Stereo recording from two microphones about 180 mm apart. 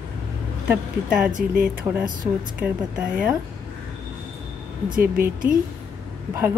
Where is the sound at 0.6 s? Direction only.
5° right (ahead or behind).